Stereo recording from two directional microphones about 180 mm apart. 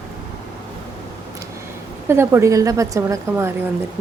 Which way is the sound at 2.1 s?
15° right (ahead or behind).